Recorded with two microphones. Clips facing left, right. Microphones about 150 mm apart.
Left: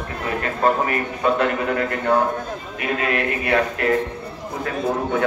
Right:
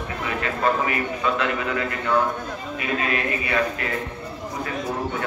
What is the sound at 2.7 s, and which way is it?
A man's voice, 65° left (ahead or behind).